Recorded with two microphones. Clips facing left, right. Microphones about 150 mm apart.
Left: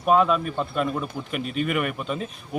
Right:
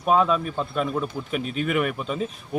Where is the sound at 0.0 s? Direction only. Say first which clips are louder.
Left 1 dB; centre (ahead or behind).